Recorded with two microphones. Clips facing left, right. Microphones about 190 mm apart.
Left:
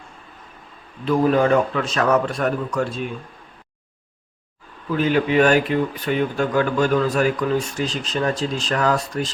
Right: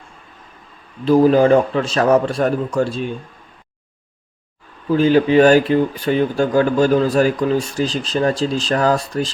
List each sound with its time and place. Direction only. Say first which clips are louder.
1.0 s speech: right 5 dB; 30° right (ahead or behind)
4.9 s speech: right 6 dB; 30° right (ahead or behind)